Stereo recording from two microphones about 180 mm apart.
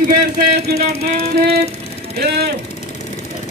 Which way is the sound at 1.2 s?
60° right (ahead or behind).